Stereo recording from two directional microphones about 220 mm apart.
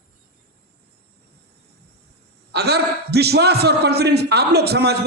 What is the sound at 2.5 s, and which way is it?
A man's voice, 45° right (ahead or behind).